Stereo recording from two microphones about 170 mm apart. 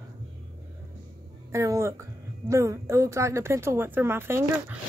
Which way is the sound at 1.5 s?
15° right (ahead or behind).